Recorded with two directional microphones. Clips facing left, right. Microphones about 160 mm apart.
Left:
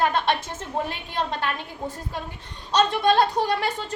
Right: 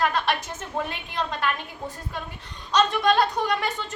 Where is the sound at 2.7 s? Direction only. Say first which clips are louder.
Left 1 dB; 30° left (ahead or behind).